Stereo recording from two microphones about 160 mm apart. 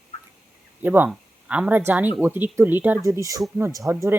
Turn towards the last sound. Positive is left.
turn(degrees=-15)  # may be behind; listen again after turning